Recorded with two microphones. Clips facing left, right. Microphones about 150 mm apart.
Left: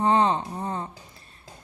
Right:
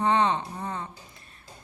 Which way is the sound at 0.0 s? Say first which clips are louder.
Left 2 dB; 35° left (ahead or behind).